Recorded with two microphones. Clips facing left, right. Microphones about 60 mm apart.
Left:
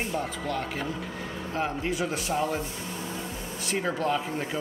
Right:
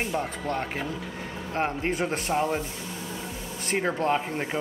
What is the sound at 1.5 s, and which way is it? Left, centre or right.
Speech, right.